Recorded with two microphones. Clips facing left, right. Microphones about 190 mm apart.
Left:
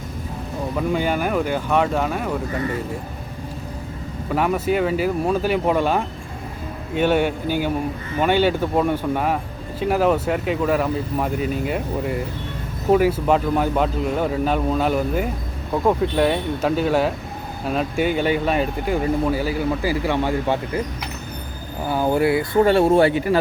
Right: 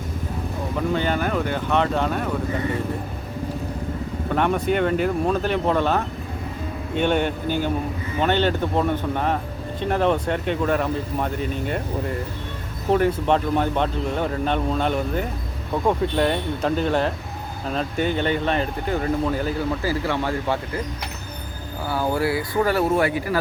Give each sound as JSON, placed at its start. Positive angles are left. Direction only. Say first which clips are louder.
{"t": 0.9, "sound": "speech", "louder": "left 2 dB", "side_deg": 10}
{"t": 4.3, "sound": "speech", "louder": "left 1 dB", "side_deg": 5}
{"t": 21.8, "sound": "speech", "louder": "left 4 dB", "side_deg": 20}